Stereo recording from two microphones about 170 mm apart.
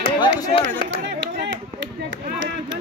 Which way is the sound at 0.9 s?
90° right.